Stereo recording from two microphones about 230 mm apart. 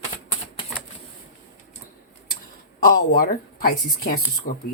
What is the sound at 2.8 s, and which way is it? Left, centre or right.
Speech, left.